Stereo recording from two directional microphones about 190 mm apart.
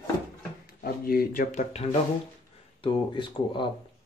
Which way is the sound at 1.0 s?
50° left (ahead or behind).